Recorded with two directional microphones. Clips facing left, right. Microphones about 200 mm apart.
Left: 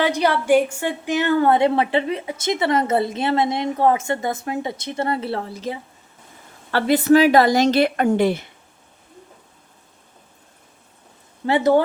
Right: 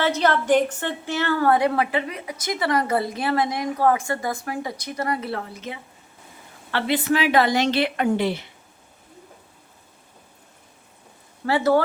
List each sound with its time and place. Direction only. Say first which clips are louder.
0.0 s a woman's voice: left 2 dB; 15° left (ahead or behind); by 8.4 s 50° left (ahead or behind)
11.4 s a woman's voice: left 3 dB; 20° left (ahead or behind)